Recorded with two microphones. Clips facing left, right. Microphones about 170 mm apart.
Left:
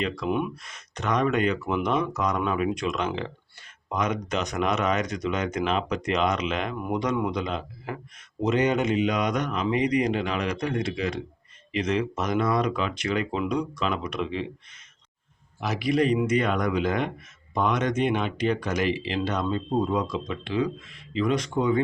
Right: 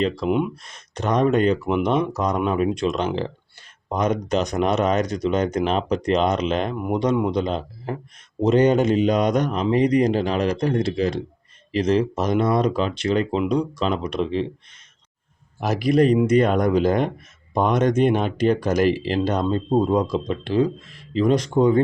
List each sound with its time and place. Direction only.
0.3 s speech: 20° right (ahead or behind)
0.6 s speech: 30° right (ahead or behind)
6.7 s speech: 25° right (ahead or behind)
15.6 s a man's voice: 40° right (ahead or behind)